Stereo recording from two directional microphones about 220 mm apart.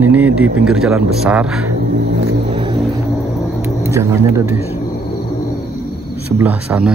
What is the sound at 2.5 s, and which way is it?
Vehicle, 25° right (ahead or behind).